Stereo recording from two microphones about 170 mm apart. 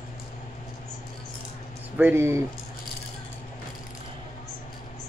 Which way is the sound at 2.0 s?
15° right (ahead or behind).